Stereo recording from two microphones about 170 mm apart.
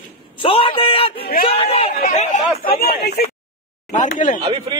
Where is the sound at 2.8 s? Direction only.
70° left (ahead or behind).